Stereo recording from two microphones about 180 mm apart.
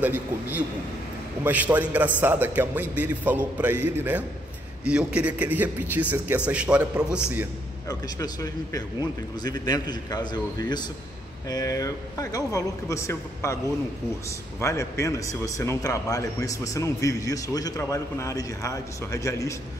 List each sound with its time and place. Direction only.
0.0 s a man's voice: 10° right (ahead or behind)
7.9 s speech: 20° left (ahead or behind)
14.6 s a man's voice: 15° left (ahead or behind)